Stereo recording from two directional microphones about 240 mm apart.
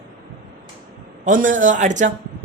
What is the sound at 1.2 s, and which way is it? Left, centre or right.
Speech, right.